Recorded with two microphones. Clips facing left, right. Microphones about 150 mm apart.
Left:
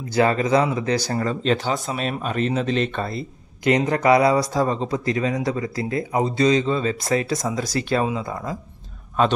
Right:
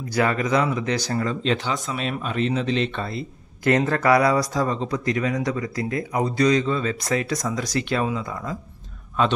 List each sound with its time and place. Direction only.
0.1 s speech: 25° left (ahead or behind)
3.6 s speech: 20° left (ahead or behind)